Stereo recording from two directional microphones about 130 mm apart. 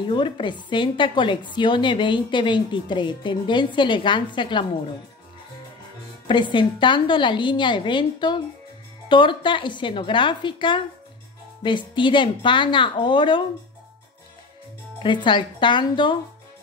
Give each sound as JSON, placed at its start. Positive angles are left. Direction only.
{"t": 0.1, "sound": "a woman's voice", "side_deg": 35}
{"t": 6.2, "sound": "a woman's voice", "side_deg": 35}
{"t": 15.0, "sound": "a woman's voice", "side_deg": 40}